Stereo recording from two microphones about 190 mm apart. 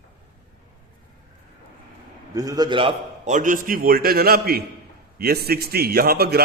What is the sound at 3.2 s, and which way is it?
A man's voice, 40° right (ahead or behind).